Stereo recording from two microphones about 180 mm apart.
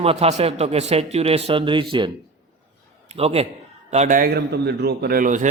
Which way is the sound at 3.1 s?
35° right (ahead or behind).